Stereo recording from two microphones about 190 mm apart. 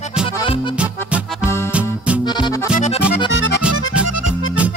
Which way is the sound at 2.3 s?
25° left (ahead or behind).